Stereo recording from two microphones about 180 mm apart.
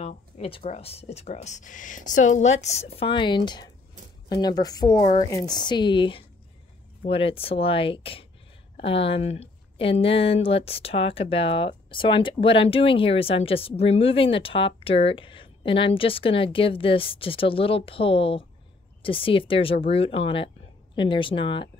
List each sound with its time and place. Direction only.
0.0 s speech: 35° left (ahead or behind)